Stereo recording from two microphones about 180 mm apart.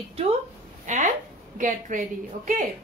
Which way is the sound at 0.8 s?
45° right (ahead or behind).